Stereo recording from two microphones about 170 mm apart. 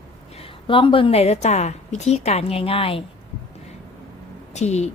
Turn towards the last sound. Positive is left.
turn(degrees=40)  # may be behind; listen again after turning